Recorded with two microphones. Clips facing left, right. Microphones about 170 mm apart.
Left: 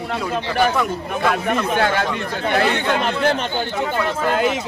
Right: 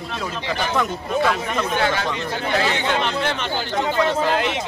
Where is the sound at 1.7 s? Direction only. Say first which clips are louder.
Left 2 dB; 50° left (ahead or behind).